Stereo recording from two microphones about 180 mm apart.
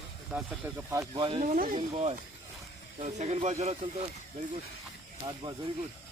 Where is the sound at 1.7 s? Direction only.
35° right (ahead or behind).